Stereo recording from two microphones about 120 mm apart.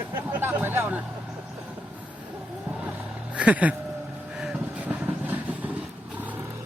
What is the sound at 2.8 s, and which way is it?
Vehicle, 10° right (ahead or behind).